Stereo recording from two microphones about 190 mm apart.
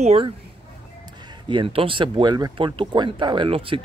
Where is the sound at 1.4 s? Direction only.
25° right (ahead or behind).